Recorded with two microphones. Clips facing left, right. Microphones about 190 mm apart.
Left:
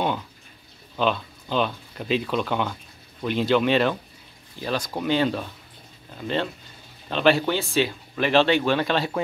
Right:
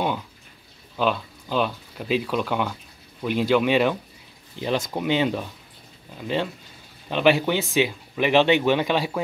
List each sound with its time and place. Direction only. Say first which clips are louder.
0.9 s speech: even; 5° right (ahead or behind)
4.6 s speech: right 2 dB; 20° right (ahead or behind)